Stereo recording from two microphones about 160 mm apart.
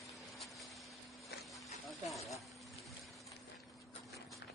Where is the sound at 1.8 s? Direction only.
Centre (ahead or behind).